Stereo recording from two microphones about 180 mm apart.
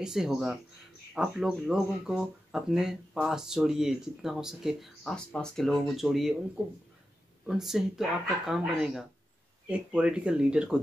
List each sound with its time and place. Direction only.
0.0 s speech: 5° right (ahead or behind)
7.4 s speech: centre (ahead or behind)